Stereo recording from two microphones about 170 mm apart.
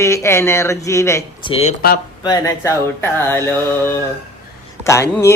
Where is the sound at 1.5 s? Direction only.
35° left (ahead or behind).